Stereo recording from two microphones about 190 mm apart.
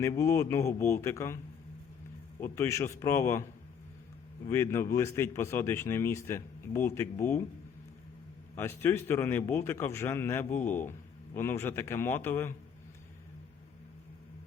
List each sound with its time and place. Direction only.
0.2 s speech: 15° left (ahead or behind)
2.4 s speech: 15° left (ahead or behind)
4.4 s speech: 15° left (ahead or behind)
8.5 s speech: 10° left (ahead or behind)